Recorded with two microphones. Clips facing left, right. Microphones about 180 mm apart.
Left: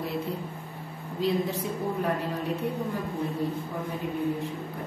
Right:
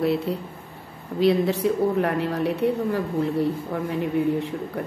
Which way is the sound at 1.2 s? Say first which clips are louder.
Right 8 dB; 75° right (ahead or behind).